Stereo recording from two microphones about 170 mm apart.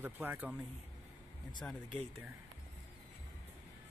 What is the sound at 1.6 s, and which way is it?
Speech, 10° left (ahead or behind).